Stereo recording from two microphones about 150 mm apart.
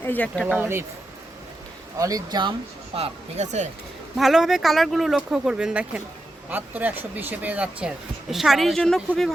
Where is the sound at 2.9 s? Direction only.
45° right (ahead or behind).